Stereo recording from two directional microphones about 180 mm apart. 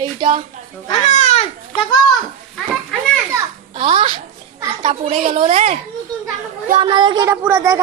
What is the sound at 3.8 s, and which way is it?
A woman's voice, 30° right (ahead or behind).